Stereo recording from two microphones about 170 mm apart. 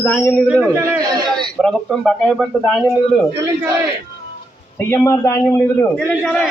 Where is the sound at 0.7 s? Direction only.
20° right (ahead or behind).